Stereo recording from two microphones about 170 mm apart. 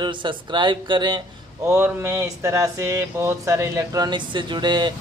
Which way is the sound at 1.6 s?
15° right (ahead or behind).